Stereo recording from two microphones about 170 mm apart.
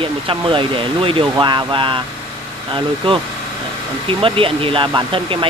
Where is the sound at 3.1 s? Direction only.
30° right (ahead or behind).